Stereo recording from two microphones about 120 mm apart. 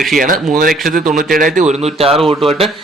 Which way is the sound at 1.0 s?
90° right.